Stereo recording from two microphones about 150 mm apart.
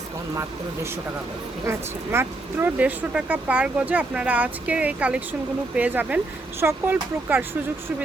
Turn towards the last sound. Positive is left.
turn(degrees=-15)  # may be behind; listen again after turning